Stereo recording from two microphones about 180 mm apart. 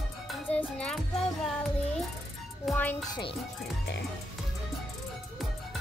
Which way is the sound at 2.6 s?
10° left (ahead or behind).